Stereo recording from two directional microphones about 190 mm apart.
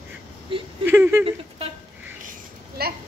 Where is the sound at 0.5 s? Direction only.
25° right (ahead or behind).